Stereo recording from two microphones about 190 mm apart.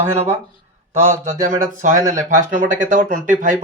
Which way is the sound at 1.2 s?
40° right (ahead or behind).